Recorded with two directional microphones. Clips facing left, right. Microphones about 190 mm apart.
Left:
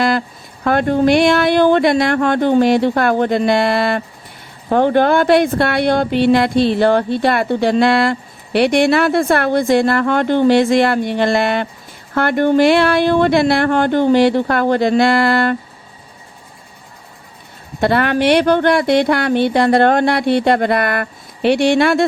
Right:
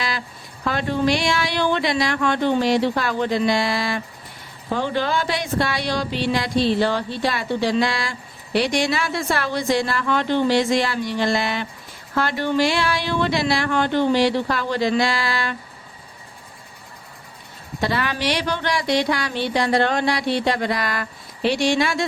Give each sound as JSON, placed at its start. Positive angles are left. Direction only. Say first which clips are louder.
{"t": 0.6, "sound": "speech", "louder": "left 7 dB", "side_deg": 55}
{"t": 17.7, "sound": "speech", "louder": "left 9 dB", "side_deg": 55}